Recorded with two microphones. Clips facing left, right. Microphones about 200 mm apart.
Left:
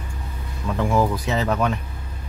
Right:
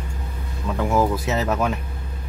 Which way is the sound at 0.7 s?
5° right (ahead or behind).